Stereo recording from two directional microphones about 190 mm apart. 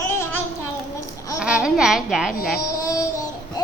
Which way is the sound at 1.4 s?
5° right (ahead or behind).